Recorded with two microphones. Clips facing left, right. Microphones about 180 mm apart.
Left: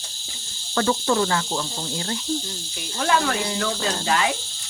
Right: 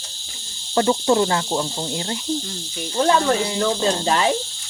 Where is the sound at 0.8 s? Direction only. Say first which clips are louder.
Right 4 dB; 25° right (ahead or behind).